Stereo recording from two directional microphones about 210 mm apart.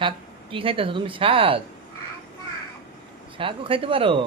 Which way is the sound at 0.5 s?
25° right (ahead or behind).